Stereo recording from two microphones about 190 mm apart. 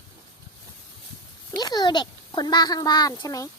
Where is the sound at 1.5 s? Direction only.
20° left (ahead or behind).